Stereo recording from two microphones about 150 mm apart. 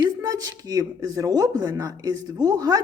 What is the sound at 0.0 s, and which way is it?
Speech, 25° right (ahead or behind).